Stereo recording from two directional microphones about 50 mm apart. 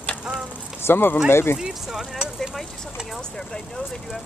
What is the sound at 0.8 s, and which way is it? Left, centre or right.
Speech, left.